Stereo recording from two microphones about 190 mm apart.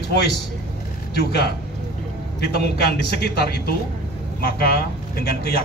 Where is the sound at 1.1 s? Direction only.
60° left (ahead or behind).